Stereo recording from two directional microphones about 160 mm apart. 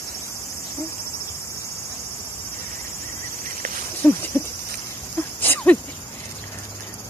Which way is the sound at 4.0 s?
15° left (ahead or behind).